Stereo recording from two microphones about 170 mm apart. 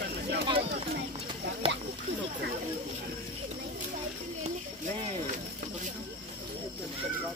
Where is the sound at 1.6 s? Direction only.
35° right (ahead or behind).